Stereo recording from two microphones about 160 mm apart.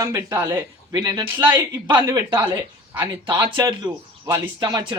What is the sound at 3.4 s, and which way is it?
Speech, 30° right (ahead or behind).